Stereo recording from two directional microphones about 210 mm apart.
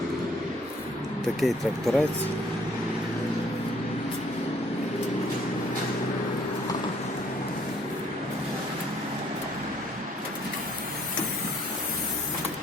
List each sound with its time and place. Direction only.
1.4 s speech: centre (ahead or behind)